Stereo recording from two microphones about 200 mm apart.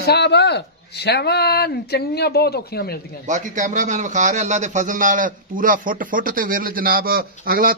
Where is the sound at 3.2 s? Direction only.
40° right (ahead or behind).